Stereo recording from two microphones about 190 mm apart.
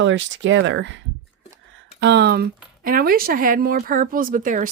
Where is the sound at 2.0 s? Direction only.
65° right (ahead or behind).